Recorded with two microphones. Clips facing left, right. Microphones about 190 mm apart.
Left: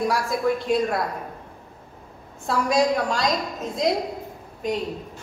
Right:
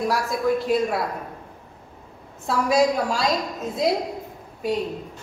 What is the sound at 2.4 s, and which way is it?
A woman's voice, 5° right (ahead or behind).